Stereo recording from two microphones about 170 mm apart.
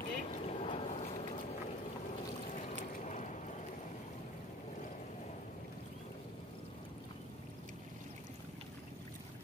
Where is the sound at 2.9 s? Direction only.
45° left (ahead or behind).